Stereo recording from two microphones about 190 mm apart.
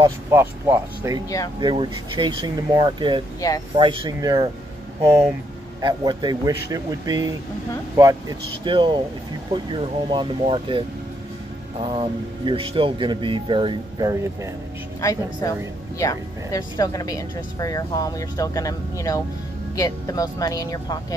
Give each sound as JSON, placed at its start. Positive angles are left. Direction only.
{"t": 0.0, "sound": "speech", "side_deg": -15}
{"t": 3.3, "sound": "speech", "side_deg": 20}
{"t": 3.7, "sound": "speech", "side_deg": -25}
{"t": 5.8, "sound": "speech", "side_deg": -20}
{"t": 11.8, "sound": "speech", "side_deg": -25}
{"t": 15.0, "sound": "a woman's voice", "side_deg": 15}